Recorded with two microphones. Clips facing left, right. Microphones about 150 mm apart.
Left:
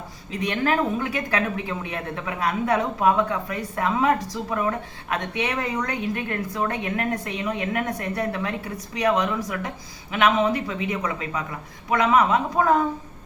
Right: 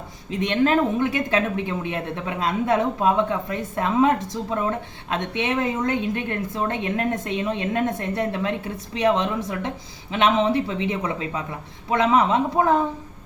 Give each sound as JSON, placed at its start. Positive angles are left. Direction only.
{"t": 0.3, "sound": "speech", "side_deg": -20}